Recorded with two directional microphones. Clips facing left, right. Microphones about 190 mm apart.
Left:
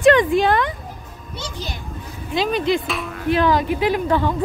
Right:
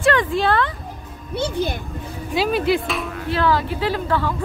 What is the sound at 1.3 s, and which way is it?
Speech, 60° right (ahead or behind).